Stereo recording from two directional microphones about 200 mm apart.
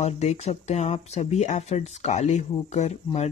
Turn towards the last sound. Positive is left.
turn(degrees=35)  # may be behind; listen again after turning